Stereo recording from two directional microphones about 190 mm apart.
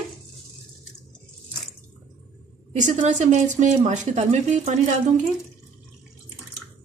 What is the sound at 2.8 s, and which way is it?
A woman's voice, 40° right (ahead or behind).